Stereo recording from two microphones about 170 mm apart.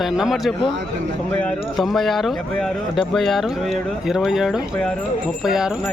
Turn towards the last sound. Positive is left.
turn(degrees=0)  # may be behind; listen again after turning